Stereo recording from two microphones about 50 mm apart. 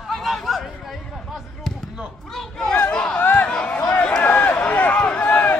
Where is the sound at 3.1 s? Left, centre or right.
Left.